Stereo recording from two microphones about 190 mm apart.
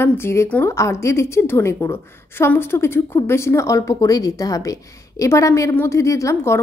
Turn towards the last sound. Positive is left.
turn(degrees=15)  # may be behind; listen again after turning